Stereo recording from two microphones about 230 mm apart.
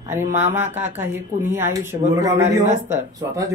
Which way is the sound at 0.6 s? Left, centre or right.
Right.